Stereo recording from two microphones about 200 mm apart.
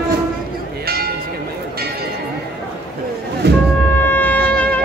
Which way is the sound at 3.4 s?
55° right (ahead or behind).